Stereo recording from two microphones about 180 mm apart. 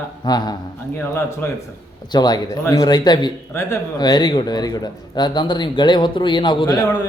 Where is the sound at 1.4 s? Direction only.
15° left (ahead or behind).